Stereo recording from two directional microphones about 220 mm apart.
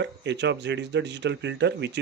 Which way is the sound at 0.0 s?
55° right (ahead or behind).